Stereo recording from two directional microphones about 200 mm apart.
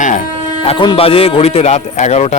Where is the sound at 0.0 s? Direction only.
40° left (ahead or behind).